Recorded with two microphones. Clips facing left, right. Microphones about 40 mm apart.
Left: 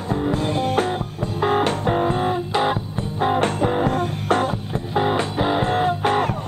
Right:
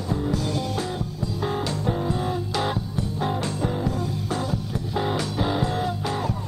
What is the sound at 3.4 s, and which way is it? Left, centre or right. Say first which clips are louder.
Music: left 7 dB; left.